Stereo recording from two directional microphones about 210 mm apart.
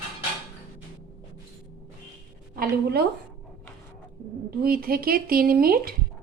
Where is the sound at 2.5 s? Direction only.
50° right (ahead or behind).